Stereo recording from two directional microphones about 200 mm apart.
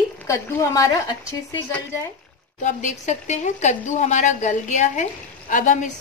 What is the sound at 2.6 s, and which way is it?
A woman's voice, 35° left (ahead or behind).